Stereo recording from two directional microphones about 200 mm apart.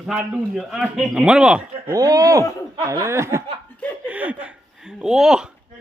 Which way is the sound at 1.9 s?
15° right (ahead or behind).